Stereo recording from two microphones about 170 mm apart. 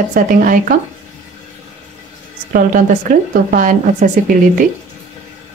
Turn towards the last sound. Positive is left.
turn(degrees=-50)  # may be behind; listen again after turning